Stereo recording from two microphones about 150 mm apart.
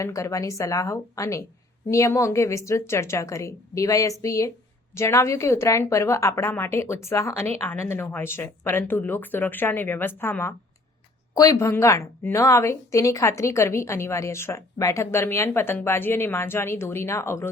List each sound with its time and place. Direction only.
0.0 s a woman's voice: 20° left (ahead or behind)